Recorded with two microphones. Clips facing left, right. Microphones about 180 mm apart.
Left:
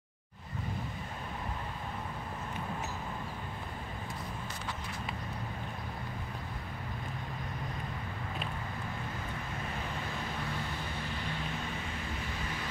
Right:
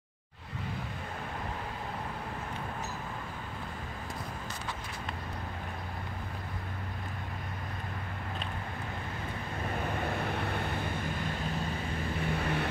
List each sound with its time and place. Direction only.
10.0 s vehicle: 65° right (ahead or behind)
12.4 s vehicle: 65° right (ahead or behind)